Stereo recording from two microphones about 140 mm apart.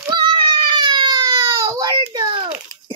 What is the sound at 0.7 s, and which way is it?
Baby cry, 30° right (ahead or behind).